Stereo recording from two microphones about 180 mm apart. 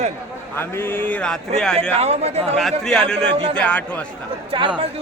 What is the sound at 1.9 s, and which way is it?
Speech, 35° right (ahead or behind).